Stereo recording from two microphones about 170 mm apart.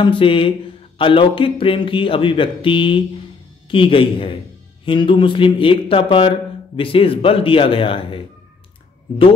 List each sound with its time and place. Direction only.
0.0 s speech: 30° left (ahead or behind)